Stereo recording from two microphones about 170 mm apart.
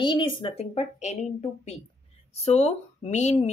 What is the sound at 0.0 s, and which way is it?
Speech, 30° left (ahead or behind).